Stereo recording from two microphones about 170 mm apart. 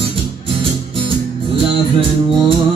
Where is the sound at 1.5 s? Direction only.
30° right (ahead or behind).